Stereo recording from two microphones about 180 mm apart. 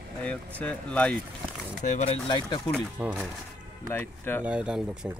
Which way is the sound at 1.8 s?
40° left (ahead or behind).